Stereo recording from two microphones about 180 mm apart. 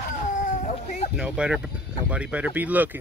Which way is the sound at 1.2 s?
5° right (ahead or behind).